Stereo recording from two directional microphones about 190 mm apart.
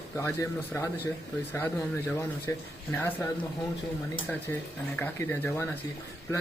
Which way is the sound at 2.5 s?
10° left (ahead or behind).